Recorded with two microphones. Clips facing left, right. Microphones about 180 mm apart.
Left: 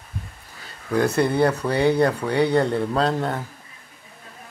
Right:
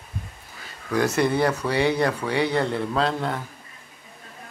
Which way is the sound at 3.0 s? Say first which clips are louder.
Left 1 dB; 40° left (ahead or behind).